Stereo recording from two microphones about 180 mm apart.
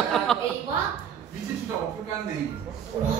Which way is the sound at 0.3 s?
Centre (ahead or behind).